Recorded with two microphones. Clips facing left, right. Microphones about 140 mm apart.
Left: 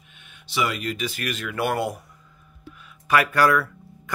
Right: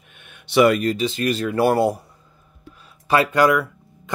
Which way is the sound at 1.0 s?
25° right (ahead or behind).